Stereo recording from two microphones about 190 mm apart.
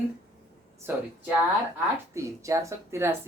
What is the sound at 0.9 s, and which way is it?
Speech, 10° right (ahead or behind).